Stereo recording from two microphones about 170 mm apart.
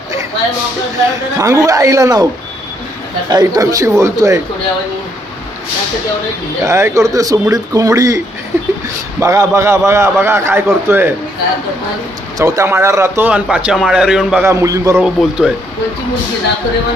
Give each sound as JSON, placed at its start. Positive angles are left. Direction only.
{"t": 1.4, "sound": "speech", "side_deg": -20}
{"t": 3.3, "sound": "speech", "side_deg": -20}
{"t": 6.6, "sound": "speech", "side_deg": -15}
{"t": 9.2, "sound": "a man's voice", "side_deg": -15}
{"t": 12.4, "sound": "a man's voice", "side_deg": -20}
{"t": 14.4, "sound": "a man's voice", "side_deg": -15}
{"t": 15.1, "sound": "speech", "side_deg": -5}